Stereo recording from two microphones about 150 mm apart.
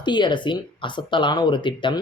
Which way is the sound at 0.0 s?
30° left (ahead or behind).